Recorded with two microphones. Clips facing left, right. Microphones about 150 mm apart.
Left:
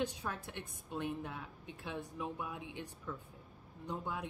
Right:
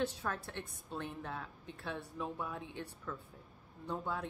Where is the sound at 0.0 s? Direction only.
15° left (ahead or behind).